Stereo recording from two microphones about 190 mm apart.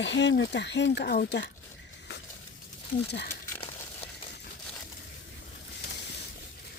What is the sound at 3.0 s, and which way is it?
Speech, 60° left (ahead or behind).